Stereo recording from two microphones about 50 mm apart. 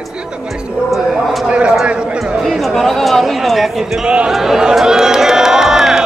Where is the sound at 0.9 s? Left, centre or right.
Centre.